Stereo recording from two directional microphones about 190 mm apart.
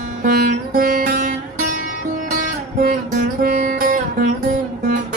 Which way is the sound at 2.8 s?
50° right (ahead or behind).